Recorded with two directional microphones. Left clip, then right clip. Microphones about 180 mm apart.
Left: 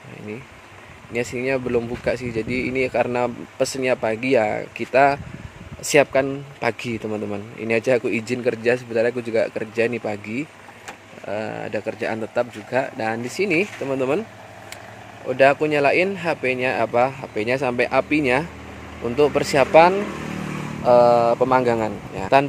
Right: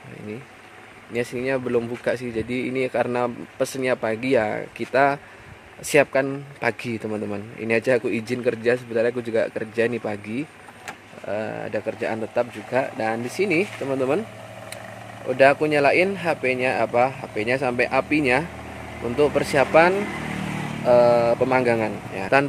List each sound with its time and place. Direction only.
1.1 s a man's voice: 10° left (ahead or behind)
15.2 s a man's voice: 10° left (ahead or behind)